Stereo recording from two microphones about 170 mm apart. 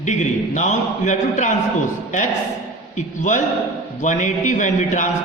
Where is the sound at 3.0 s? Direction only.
45° left (ahead or behind).